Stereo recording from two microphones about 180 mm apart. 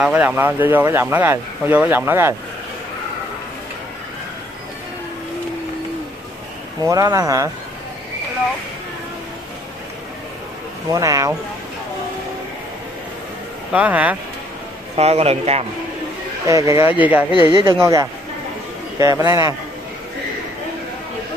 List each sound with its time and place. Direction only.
0.0 s speech: 5° right (ahead or behind)
6.8 s speech: 20° right (ahead or behind)
10.9 s speech: 20° right (ahead or behind)
13.7 s speech: 10° right (ahead or behind)
15.0 s a man's voice: 35° right (ahead or behind)
16.4 s speech: 15° right (ahead or behind)
17.3 s speech: 25° left (ahead or behind)
18.9 s speech: 15° right (ahead or behind)